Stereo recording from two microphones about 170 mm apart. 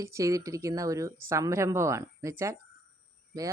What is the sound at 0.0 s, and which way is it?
Speech, 20° right (ahead or behind).